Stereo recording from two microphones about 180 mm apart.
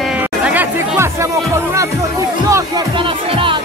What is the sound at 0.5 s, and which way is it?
Chatter, 10° right (ahead or behind).